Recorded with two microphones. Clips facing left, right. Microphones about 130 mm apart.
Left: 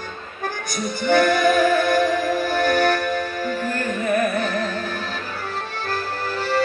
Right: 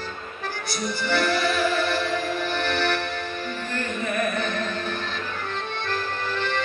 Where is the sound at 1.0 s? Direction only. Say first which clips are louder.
Left 7 dB; 50° left (ahead or behind).